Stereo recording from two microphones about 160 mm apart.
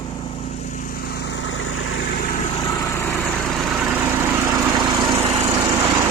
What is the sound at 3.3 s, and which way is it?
Vehicle, centre (ahead or behind).